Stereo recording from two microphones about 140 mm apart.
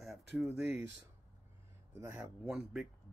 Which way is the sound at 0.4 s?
15° right (ahead or behind).